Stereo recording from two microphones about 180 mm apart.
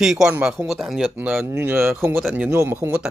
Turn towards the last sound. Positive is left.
turn(degrees=-10)  # may be behind; listen again after turning